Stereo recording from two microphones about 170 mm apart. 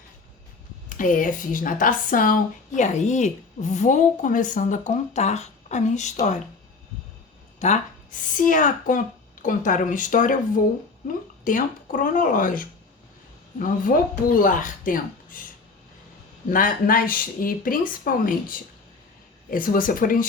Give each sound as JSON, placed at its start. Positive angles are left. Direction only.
{"t": 0.9, "sound": "a woman's voice", "side_deg": 50}
{"t": 7.6, "sound": "a woman's voice", "side_deg": 50}
{"t": 16.5, "sound": "speech", "side_deg": 55}